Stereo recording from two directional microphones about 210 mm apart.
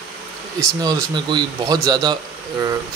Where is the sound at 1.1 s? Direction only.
20° right (ahead or behind).